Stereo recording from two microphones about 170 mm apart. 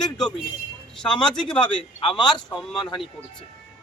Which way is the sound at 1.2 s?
5° left (ahead or behind).